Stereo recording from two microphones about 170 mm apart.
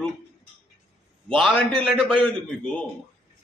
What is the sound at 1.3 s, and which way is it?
A man's voice, centre (ahead or behind).